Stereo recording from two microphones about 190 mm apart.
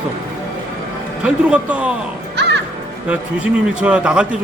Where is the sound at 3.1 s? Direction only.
5° right (ahead or behind).